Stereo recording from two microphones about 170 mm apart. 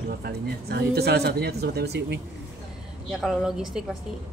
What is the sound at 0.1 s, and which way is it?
Speech, 65° right (ahead or behind).